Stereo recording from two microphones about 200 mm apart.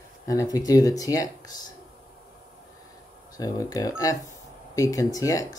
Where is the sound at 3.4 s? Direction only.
20° left (ahead or behind).